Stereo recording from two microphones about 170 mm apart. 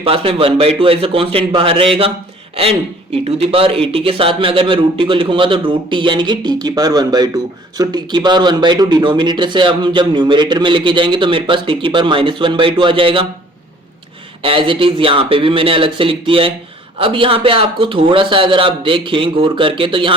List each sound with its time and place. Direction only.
0.0 s a man's voice: 35° right (ahead or behind)
14.4 s a man's voice: 30° right (ahead or behind)